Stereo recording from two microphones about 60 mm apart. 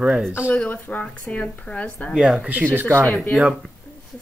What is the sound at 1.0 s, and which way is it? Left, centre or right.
A woman's voice, centre.